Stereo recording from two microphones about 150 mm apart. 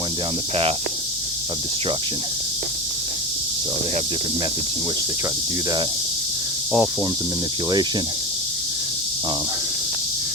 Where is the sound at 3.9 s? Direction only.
45° right (ahead or behind).